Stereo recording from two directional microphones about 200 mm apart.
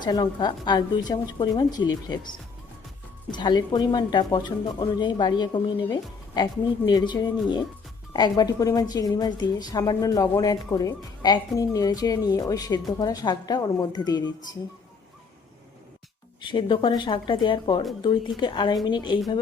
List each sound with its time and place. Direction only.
0.0 s a woman's voice: 20° left (ahead or behind)
16.4 s a woman's voice: 25° left (ahead or behind)